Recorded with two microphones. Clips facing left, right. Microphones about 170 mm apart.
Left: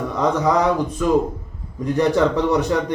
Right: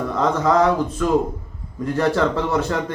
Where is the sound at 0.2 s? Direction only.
15° left (ahead or behind).